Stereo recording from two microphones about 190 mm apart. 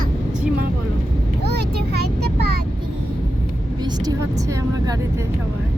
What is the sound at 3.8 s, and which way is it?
Speech, 20° right (ahead or behind).